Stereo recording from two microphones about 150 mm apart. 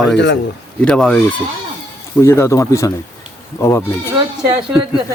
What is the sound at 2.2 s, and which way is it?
Speech, 20° left (ahead or behind).